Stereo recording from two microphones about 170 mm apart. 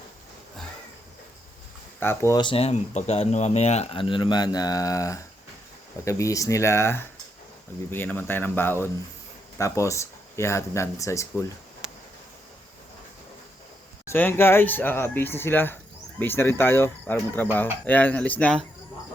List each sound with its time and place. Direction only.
2.0 s speech: 15° left (ahead or behind)
11.8 s insect: 5° right (ahead or behind)
14.1 s speech: 10° left (ahead or behind)